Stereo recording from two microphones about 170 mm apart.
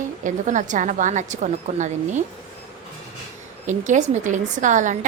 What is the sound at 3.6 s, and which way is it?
A woman's voice, 45° right (ahead or behind).